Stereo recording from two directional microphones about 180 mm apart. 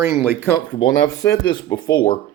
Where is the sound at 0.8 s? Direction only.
20° left (ahead or behind).